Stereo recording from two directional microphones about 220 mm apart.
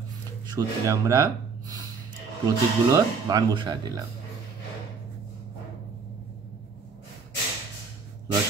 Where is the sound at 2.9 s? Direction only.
15° right (ahead or behind).